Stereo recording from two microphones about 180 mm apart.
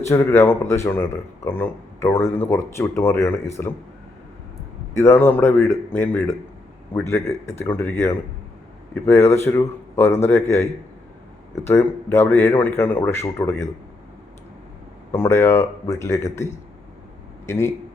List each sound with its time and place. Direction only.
0.1 s speech: 15° left (ahead or behind)
4.9 s speech: 15° left (ahead or behind)
11.6 s speech: 15° left (ahead or behind)
15.1 s speech: 15° left (ahead or behind)